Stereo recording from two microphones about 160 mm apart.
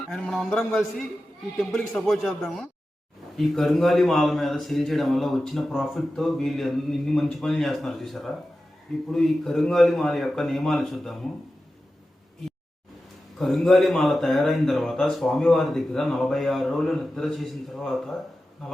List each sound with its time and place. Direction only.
0.1 s a man's voice: 5° left (ahead or behind)
13.4 s a man's voice: centre (ahead or behind)